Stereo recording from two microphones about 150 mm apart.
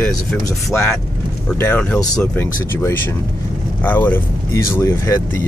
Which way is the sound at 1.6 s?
10° left (ahead or behind).